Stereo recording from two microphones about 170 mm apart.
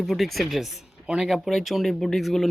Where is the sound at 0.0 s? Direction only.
Centre (ahead or behind).